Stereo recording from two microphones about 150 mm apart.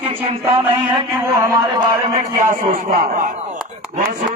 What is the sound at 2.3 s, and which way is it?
Speech, 65° right (ahead or behind).